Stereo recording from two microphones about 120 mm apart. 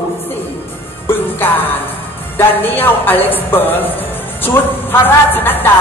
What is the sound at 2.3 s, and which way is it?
Speech, 15° left (ahead or behind).